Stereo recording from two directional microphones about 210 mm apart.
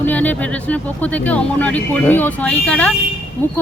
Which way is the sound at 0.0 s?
5° left (ahead or behind).